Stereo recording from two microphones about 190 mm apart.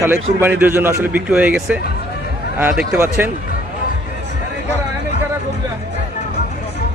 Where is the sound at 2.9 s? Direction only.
10° right (ahead or behind).